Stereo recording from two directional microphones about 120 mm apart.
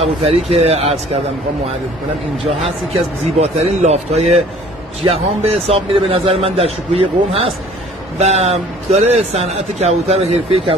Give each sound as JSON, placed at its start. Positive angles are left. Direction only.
{"t": 0.0, "sound": "a man's voice", "side_deg": -55}
{"t": 2.3, "sound": "a man's voice", "side_deg": -55}